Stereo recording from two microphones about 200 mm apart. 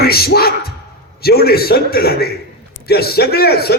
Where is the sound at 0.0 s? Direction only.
50° left (ahead or behind).